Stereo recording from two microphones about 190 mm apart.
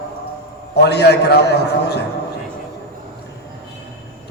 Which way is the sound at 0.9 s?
60° left (ahead or behind).